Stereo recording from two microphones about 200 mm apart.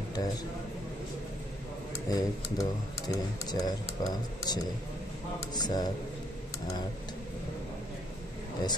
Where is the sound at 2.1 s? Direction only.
20° left (ahead or behind).